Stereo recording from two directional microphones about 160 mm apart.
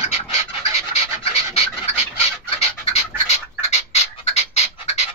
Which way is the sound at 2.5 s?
40° left (ahead or behind).